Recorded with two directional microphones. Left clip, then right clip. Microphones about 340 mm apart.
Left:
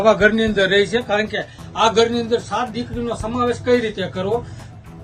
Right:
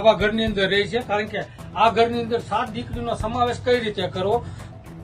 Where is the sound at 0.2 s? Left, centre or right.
Left.